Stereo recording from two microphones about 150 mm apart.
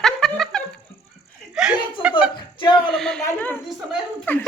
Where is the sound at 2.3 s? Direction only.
30° left (ahead or behind).